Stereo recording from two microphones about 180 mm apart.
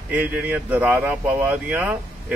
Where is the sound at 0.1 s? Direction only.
10° right (ahead or behind).